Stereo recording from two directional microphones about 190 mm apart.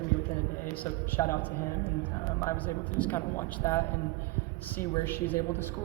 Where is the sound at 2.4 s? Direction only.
10° left (ahead or behind).